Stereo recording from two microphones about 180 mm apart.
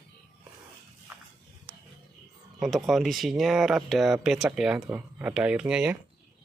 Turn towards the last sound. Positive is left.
turn(degrees=-5)  # may be behind; listen again after turning